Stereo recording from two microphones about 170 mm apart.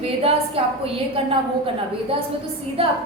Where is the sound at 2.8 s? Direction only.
35° right (ahead or behind).